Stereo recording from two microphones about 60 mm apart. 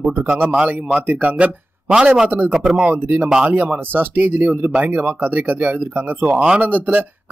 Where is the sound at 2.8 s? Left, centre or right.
Right.